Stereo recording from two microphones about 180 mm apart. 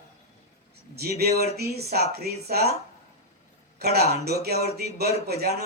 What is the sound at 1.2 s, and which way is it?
Speech, 60° right (ahead or behind).